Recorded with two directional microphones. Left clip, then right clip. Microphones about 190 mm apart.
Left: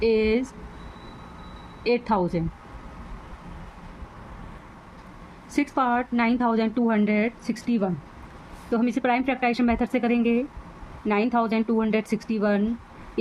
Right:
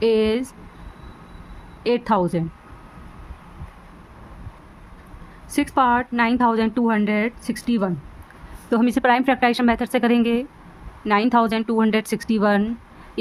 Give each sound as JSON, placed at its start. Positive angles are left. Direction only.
{"t": 0.0, "sound": "a sound", "side_deg": -30}
{"t": 1.8, "sound": "speech", "side_deg": -30}
{"t": 5.5, "sound": "speech", "side_deg": -25}